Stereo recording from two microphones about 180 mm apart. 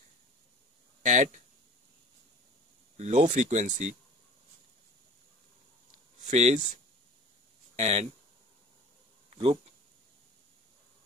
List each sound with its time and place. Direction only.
1.0 s speech: 45° right (ahead or behind)
3.0 s speech: 40° right (ahead or behind)
6.2 s speech: 40° right (ahead or behind)
7.7 s speech: 35° right (ahead or behind)
9.3 s a sound: 30° right (ahead or behind)